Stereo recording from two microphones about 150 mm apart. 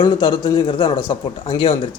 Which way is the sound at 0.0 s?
30° left (ahead or behind).